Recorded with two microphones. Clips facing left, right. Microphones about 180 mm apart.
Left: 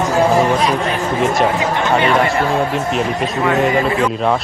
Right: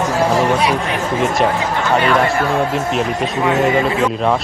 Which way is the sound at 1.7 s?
25° left (ahead or behind).